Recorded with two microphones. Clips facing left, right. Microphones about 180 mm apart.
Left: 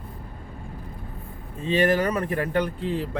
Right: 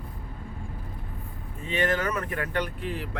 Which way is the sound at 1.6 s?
30° left (ahead or behind).